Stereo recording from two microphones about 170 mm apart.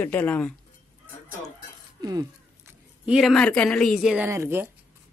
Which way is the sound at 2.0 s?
20° right (ahead or behind).